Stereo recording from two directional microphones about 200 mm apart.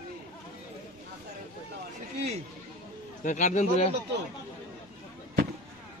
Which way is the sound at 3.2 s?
40° left (ahead or behind).